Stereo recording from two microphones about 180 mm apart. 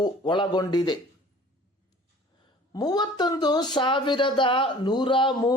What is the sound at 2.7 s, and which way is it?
Speech, 20° left (ahead or behind).